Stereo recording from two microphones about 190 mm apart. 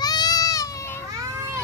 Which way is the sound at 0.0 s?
20° left (ahead or behind).